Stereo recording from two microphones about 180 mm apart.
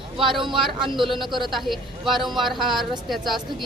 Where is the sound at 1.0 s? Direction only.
Centre (ahead or behind).